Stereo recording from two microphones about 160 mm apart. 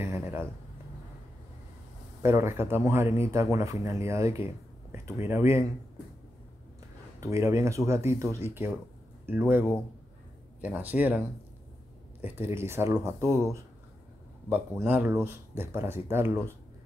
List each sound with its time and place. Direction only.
0.0 s a sound: 15° right (ahead or behind)
2.2 s speech: 15° right (ahead or behind)
7.2 s speech: 20° right (ahead or behind)
14.9 s speech: 15° right (ahead or behind)